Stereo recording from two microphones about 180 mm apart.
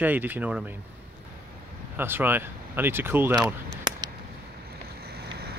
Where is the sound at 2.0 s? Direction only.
10° right (ahead or behind).